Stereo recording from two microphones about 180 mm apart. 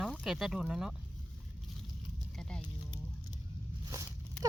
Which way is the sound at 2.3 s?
5° left (ahead or behind).